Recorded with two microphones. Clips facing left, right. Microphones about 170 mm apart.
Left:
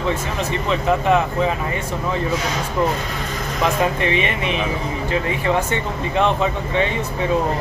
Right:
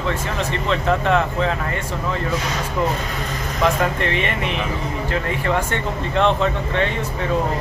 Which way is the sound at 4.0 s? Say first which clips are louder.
Left 2 dB; 15° left (ahead or behind).